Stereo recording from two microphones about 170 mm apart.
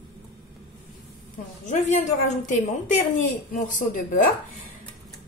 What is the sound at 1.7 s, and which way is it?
A man's voice, 45° left (ahead or behind).